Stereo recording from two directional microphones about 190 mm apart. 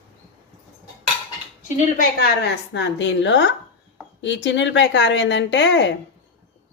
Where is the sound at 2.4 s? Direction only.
65° left (ahead or behind).